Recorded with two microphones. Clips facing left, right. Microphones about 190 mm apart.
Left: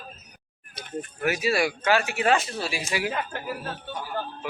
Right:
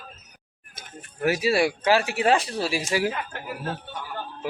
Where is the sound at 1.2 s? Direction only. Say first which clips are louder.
Right 3 dB; 30° right (ahead or behind).